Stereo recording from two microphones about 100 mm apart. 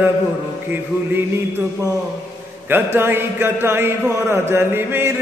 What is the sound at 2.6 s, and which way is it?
Mantra, 20° right (ahead or behind).